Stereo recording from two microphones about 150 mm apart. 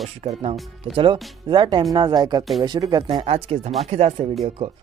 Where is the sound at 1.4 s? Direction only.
30° right (ahead or behind).